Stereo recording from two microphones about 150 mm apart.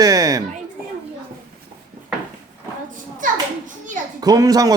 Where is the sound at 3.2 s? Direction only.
60° right (ahead or behind).